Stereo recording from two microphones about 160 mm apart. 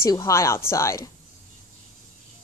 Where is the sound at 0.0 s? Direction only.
20° left (ahead or behind).